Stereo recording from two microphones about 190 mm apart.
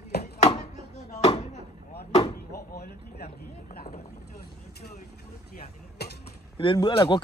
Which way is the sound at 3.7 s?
50° left (ahead or behind).